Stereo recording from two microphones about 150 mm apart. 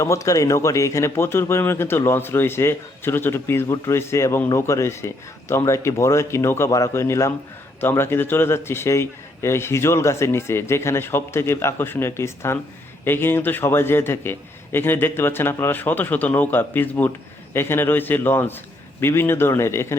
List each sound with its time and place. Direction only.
0.0 s speech: 20° left (ahead or behind)